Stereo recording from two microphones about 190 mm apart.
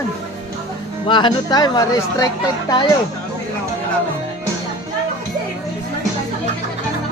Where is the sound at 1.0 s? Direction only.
25° left (ahead or behind).